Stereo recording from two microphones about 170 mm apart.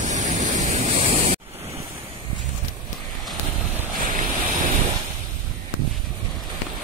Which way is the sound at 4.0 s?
50° right (ahead or behind).